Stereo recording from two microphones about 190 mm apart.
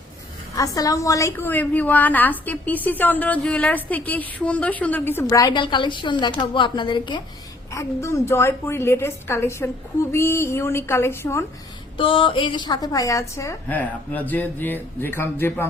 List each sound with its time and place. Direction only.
0.5 s a woman's voice: 15° left (ahead or behind)
11.9 s a woman's voice: 25° left (ahead or behind); by 15.6 s 10° left (ahead or behind)